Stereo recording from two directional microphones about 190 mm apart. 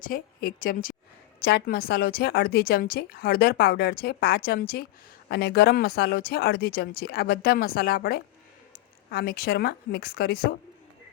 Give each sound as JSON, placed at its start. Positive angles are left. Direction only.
{"t": 0.0, "sound": "a woman's voice", "side_deg": 50}